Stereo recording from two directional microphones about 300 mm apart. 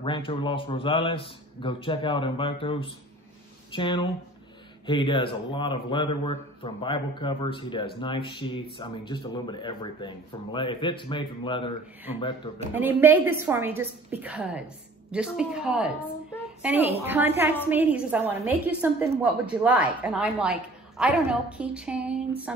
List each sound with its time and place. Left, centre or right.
0.0 s a man's voice: centre
12.7 s a woman's voice: centre